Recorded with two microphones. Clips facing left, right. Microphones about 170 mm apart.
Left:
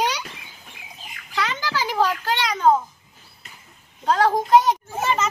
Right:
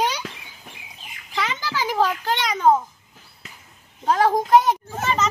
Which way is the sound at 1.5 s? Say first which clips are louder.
Even; 15° right (ahead or behind).